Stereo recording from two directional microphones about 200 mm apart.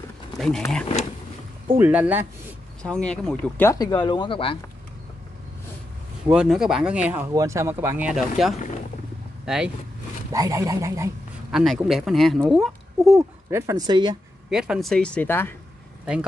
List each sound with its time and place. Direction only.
1.8 s a sound: 5° right (ahead or behind)
2.8 s speech: 5° left (ahead or behind); by 4.6 s 25° left (ahead or behind)
6.2 s speech: 5° right (ahead or behind)
10.3 s a sound: 15° right (ahead or behind)
11.5 s speech: centre (ahead or behind)
13.5 s speech: 15° right (ahead or behind)
14.5 s speech: 5° right (ahead or behind)